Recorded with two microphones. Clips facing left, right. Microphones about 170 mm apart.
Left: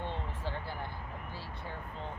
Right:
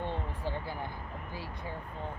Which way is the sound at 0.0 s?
15° right (ahead or behind).